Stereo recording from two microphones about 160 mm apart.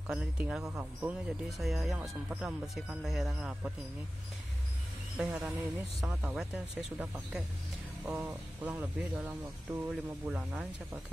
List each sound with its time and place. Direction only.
0.1 s speech: 5° right (ahead or behind)
5.1 s speech: 5° right (ahead or behind)